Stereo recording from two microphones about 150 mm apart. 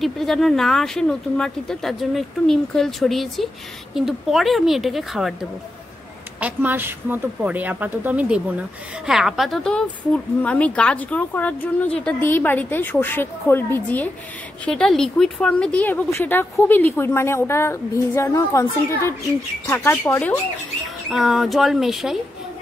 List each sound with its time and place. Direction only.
0.0 s speech: centre (ahead or behind)
21.1 s speech: centre (ahead or behind)